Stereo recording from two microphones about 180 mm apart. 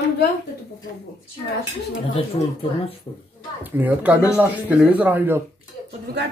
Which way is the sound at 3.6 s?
10° right (ahead or behind).